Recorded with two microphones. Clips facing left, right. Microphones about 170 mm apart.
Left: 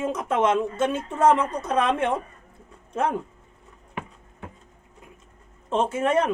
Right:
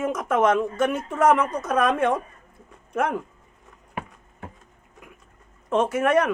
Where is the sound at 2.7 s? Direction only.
30° left (ahead or behind).